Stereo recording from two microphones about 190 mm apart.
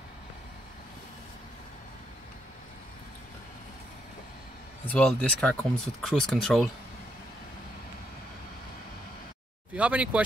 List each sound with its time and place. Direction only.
4.8 s speech: 5° left (ahead or behind)
9.8 s speech: 5° right (ahead or behind)